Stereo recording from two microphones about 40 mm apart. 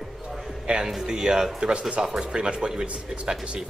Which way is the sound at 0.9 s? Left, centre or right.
Centre.